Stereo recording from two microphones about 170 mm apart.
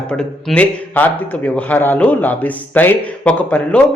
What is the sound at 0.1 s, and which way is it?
Speech, 5° left (ahead or behind).